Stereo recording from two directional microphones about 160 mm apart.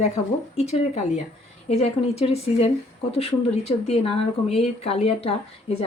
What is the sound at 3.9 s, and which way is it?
Speech, 40° left (ahead or behind).